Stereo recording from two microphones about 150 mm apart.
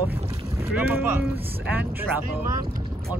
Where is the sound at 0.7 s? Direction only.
15° right (ahead or behind).